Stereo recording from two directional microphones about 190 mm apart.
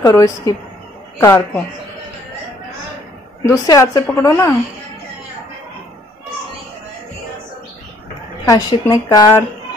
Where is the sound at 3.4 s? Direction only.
15° left (ahead or behind).